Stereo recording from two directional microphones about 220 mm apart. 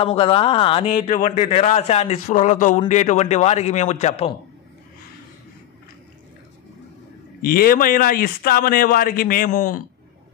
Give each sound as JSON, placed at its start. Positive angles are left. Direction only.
{"t": 0.0, "sound": "speech", "side_deg": 25}
{"t": 0.9, "sound": "a man's voice", "side_deg": 35}
{"t": 7.4, "sound": "a man's voice", "side_deg": 40}